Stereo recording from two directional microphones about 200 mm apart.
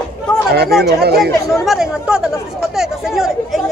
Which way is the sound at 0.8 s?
55° right (ahead or behind).